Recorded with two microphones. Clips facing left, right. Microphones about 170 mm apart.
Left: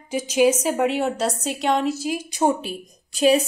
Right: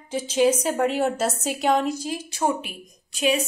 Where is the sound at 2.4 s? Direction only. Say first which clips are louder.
Left 4 dB; 30° left (ahead or behind).